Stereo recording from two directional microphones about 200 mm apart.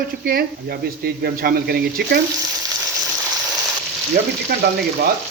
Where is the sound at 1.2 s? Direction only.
50° right (ahead or behind).